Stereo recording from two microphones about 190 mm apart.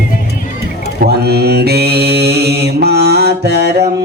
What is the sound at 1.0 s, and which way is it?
Mantra, 55° right (ahead or behind).